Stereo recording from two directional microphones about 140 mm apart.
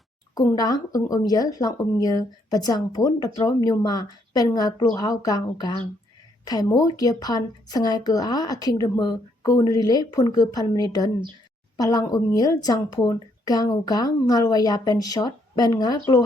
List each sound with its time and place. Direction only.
0.3 s a woman's voice: 25° left (ahead or behind)